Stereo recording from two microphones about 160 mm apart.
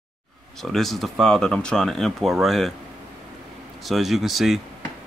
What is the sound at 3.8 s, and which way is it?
Speech, centre (ahead or behind).